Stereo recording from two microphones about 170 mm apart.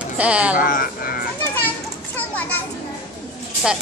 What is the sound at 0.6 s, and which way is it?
Speech, 55° left (ahead or behind).